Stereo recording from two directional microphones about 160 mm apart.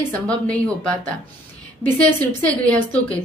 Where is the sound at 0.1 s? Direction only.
10° left (ahead or behind).